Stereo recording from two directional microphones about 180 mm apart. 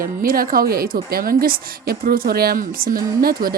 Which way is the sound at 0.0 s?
55° right (ahead or behind).